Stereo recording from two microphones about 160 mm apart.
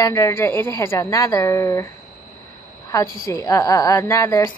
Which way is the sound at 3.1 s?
20° left (ahead or behind).